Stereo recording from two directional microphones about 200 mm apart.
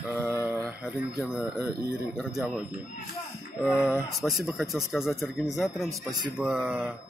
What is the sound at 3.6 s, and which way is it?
Speech, 5° right (ahead or behind).